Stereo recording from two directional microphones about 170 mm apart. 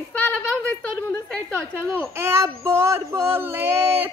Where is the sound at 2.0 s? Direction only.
15° right (ahead or behind).